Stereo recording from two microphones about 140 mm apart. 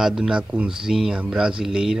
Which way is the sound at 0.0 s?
5° right (ahead or behind).